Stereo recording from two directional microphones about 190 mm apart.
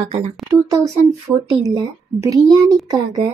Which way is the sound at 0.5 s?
15° right (ahead or behind).